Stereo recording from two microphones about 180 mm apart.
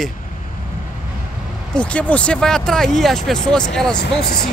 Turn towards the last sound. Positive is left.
turn(degrees=60)  # may be behind; listen again after turning